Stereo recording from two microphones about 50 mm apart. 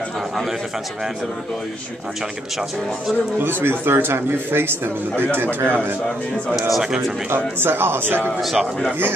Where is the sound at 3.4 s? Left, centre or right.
Right.